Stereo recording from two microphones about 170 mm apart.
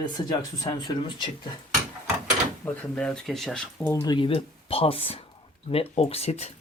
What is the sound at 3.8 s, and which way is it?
Speech, 20° left (ahead or behind).